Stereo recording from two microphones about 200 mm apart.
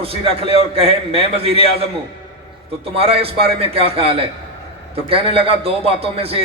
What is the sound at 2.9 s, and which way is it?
Speech, 30° right (ahead or behind).